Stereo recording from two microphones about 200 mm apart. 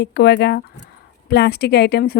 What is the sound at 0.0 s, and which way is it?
A woman's voice, 55° left (ahead or behind).